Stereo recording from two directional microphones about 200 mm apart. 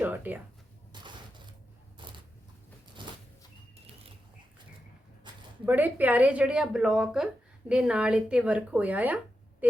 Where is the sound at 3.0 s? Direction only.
25° right (ahead or behind).